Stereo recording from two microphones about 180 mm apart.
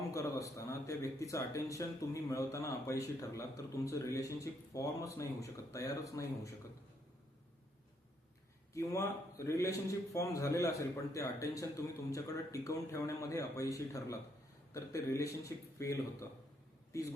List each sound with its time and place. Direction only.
0.1 s a man's voice: 15° left (ahead or behind)
8.7 s a man's voice: 15° left (ahead or behind)